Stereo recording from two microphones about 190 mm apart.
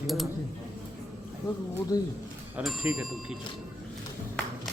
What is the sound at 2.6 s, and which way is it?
Bicycle bell, centre (ahead or behind).